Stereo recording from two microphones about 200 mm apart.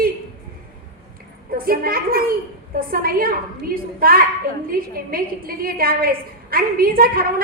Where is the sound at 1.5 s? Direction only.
45° right (ahead or behind).